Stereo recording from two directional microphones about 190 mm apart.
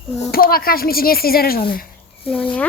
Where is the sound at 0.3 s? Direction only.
50° left (ahead or behind).